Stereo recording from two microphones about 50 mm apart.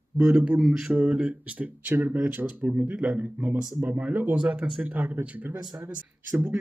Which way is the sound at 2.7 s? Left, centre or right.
Right.